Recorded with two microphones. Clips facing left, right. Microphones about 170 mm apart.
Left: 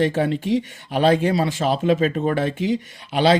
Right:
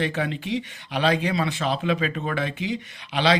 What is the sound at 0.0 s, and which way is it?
Speech, 45° left (ahead or behind).